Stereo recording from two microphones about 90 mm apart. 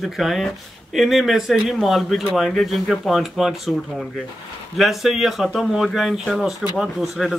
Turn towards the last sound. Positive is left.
turn(degrees=0)  # may be behind; listen again after turning